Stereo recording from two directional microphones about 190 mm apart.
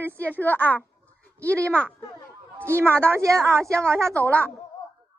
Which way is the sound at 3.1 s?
15° right (ahead or behind).